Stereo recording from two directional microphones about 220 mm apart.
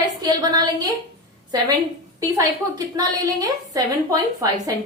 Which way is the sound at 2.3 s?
15° right (ahead or behind).